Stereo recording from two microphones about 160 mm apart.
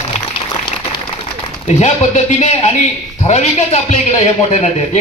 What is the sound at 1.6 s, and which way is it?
A man's voice, 45° left (ahead or behind).